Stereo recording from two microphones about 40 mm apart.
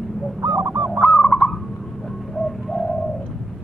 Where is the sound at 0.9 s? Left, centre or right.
Left.